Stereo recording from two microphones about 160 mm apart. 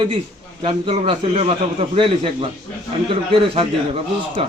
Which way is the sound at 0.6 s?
30° right (ahead or behind).